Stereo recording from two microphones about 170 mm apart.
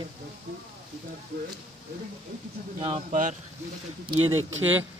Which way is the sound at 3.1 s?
45° right (ahead or behind).